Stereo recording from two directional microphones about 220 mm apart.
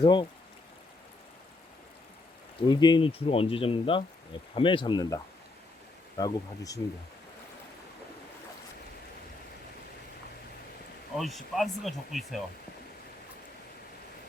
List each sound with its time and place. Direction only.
0.0 s speech: 20° left (ahead or behind)
2.6 s speech: 20° left (ahead or behind)
11.2 s speech: centre (ahead or behind)